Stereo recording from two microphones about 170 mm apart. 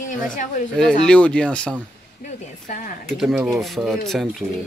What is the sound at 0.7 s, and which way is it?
Speech, 5° left (ahead or behind).